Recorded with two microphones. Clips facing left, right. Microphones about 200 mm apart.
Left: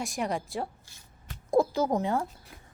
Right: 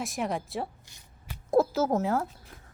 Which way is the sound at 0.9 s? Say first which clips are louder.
Right 1 dB; 20° right (ahead or behind).